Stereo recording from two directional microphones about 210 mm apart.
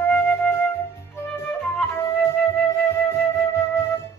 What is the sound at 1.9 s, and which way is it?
Flute, 10° left (ahead or behind).